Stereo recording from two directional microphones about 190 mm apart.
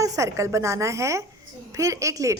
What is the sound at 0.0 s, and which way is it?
A woman's voice, 15° right (ahead or behind).